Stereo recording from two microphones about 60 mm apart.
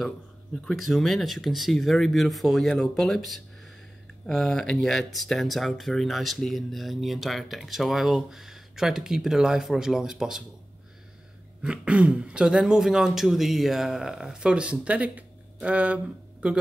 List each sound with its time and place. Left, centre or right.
0.7 s speech: centre
11.6 s speech: centre